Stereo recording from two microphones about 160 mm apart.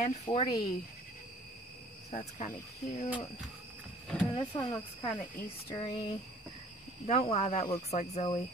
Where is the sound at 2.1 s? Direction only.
40° left (ahead or behind).